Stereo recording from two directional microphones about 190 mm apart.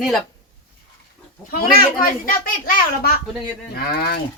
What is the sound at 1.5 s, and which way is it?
A child's voice, 50° left (ahead or behind).